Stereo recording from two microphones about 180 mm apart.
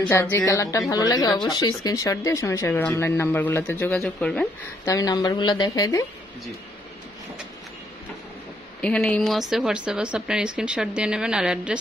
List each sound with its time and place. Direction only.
0.0 s speech: 15° left (ahead or behind)
4.9 s a woman's voice: 20° left (ahead or behind)
8.8 s speech: 5° left (ahead or behind)